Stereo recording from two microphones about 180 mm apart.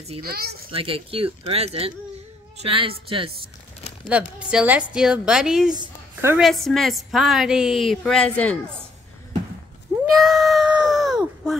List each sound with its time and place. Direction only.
0.2 s speech: 55° right (ahead or behind)
0.7 s speech: 30° right (ahead or behind)
4.1 s a woman's voice: 5° right (ahead or behind)
5.7 s a woman's voice: 25° right (ahead or behind)
6.3 s a woman's voice: centre (ahead or behind)
10.1 s a sound: centre (ahead or behind)